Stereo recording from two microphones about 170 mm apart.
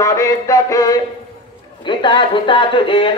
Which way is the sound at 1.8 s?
25° left (ahead or behind).